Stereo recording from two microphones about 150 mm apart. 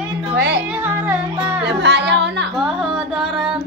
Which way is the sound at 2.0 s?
90° right.